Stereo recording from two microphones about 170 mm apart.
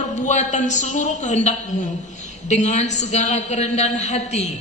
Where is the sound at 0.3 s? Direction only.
45° left (ahead or behind).